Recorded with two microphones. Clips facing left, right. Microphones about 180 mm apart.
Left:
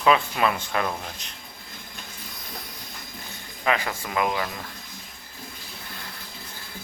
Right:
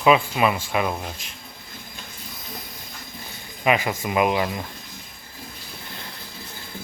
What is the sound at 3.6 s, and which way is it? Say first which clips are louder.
Speech: right 4 dB; 15° right (ahead or behind).